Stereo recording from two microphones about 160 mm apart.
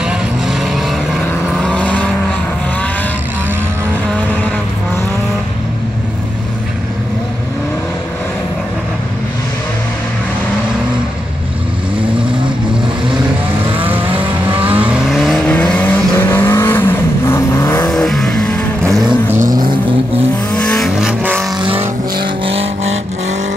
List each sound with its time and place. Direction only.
0.0 s vehicle: centre (ahead or behind)
13.8 s vehicle: 10° right (ahead or behind); by 17.9 s 20° left (ahead or behind)
17.9 s vehicle: 5° left (ahead or behind)
19.2 s vehicle: 15° right (ahead or behind)
20.5 s vehicle: 5° left (ahead or behind); by 21.5 s 10° right (ahead or behind)
21.5 s vehicle: 35° right (ahead or behind)